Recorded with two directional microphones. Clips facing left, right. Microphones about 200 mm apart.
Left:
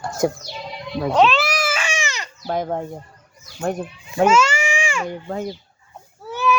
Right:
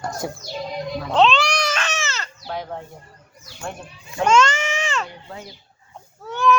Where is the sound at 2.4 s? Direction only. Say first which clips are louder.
Left 8 dB; 50° left (ahead or behind).